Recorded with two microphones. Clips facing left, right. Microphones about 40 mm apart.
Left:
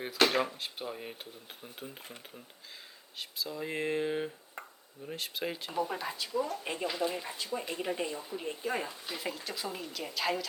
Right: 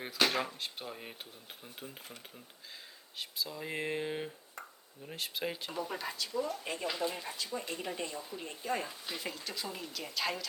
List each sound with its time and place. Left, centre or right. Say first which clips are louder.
0.4 s speech: left 3 dB; centre
3.2 s speech: left 2 dB; centre
4.6 s a sound: left 2 dB; left
5.0 s speech: left 1 dB; centre